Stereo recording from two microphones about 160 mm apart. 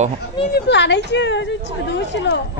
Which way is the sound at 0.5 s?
90° left.